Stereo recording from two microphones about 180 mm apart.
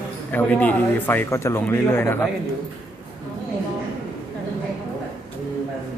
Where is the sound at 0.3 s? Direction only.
10° left (ahead or behind).